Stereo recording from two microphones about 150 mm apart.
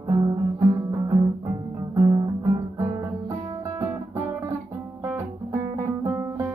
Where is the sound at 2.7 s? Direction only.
15° right (ahead or behind).